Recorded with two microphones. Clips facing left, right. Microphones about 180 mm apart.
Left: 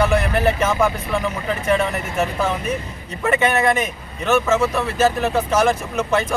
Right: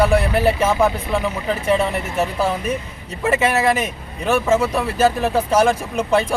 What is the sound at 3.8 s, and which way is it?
Speech, 30° right (ahead or behind).